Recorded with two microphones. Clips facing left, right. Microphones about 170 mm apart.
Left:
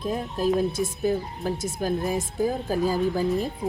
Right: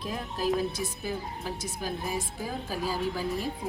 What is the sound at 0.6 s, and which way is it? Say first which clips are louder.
Speech: left 7 dB; 50° left (ahead or behind).